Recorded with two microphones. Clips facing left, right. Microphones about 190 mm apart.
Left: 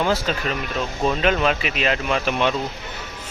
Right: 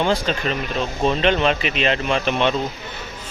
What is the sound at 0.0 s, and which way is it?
Speech, 5° left (ahead or behind).